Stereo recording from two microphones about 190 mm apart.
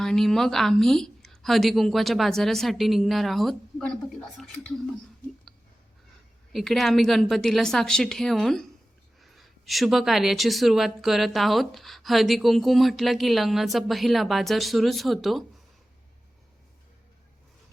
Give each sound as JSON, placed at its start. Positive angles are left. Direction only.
{"t": 0.0, "sound": "a woman's voice", "side_deg": 0}
{"t": 6.5, "sound": "a woman's voice", "side_deg": 0}